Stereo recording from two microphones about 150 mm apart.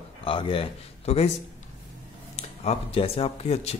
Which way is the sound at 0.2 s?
35° left (ahead or behind).